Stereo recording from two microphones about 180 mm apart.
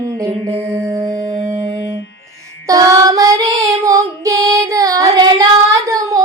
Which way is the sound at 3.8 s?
20° right (ahead or behind).